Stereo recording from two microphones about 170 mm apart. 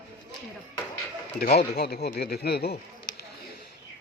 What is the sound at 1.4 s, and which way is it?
Speech, 65° left (ahead or behind).